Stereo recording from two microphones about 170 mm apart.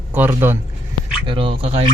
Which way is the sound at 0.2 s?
15° right (ahead or behind).